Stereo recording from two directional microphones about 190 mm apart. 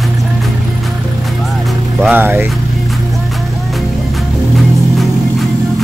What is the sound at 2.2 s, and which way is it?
Speech, 10° right (ahead or behind).